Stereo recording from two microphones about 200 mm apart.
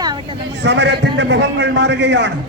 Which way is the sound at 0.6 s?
60° right (ahead or behind).